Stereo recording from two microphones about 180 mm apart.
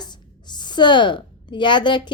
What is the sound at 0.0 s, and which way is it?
A woman's voice, 25° left (ahead or behind).